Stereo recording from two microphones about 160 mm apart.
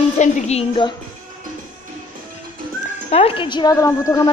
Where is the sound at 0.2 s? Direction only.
40° left (ahead or behind).